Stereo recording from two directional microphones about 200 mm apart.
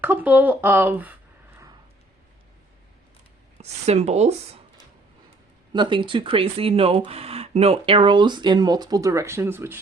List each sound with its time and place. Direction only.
0.0 s speech: 10° right (ahead or behind)
3.6 s speech: 30° right (ahead or behind)
5.7 s speech: 25° right (ahead or behind)